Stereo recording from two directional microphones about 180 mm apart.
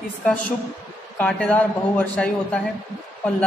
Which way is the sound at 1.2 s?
10° left (ahead or behind).